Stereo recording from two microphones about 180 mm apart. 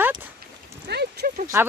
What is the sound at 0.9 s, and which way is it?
Horse, 65° right (ahead or behind).